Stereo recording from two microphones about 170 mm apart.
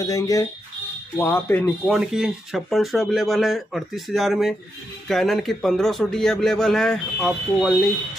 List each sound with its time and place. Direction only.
0.0 s speech: 20° left (ahead or behind)
1.9 s a man's voice: 5° right (ahead or behind)